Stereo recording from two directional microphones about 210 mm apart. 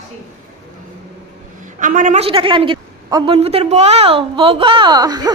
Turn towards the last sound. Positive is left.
turn(degrees=-20)  # may be behind; listen again after turning